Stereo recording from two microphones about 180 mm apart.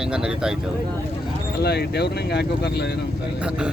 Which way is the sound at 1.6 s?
65° left (ahead or behind).